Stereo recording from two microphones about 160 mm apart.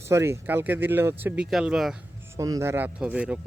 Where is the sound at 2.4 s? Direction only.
20° right (ahead or behind).